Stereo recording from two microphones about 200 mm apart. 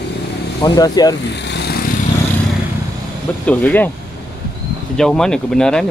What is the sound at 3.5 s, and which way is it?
Speech, 10° left (ahead or behind).